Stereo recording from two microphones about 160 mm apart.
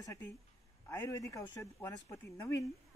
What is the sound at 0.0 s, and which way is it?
Speech, 15° left (ahead or behind).